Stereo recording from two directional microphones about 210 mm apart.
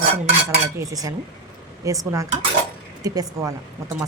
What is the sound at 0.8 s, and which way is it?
A woman's voice, 15° right (ahead or behind).